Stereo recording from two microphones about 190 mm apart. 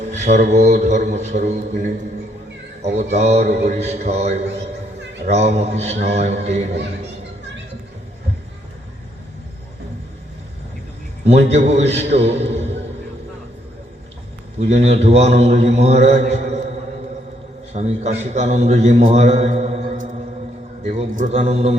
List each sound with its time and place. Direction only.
0.1 s a man's voice: 40° right (ahead or behind)
11.3 s a man's voice: 35° right (ahead or behind)
14.6 s a man's voice: 35° right (ahead or behind)
17.7 s a man's voice: 35° right (ahead or behind)